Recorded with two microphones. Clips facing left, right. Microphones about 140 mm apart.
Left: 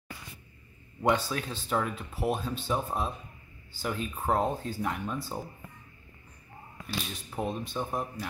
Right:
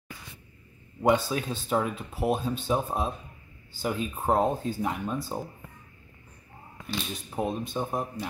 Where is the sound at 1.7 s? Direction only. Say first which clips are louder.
Right 2 dB; 20° right (ahead or behind).